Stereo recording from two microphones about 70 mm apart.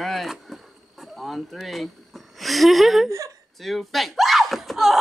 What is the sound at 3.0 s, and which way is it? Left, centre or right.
Chuckle, right.